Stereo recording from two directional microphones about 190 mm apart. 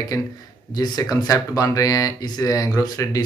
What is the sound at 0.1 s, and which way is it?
Speech, 15° left (ahead or behind).